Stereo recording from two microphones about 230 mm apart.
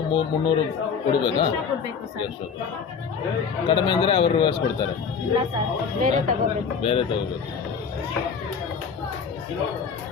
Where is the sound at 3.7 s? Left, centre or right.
Centre.